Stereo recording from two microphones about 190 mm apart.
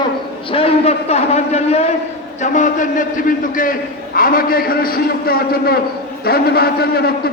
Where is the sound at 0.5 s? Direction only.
30° left (ahead or behind).